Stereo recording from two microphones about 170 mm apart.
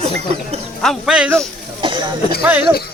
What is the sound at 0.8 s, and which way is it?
Speech, centre (ahead or behind).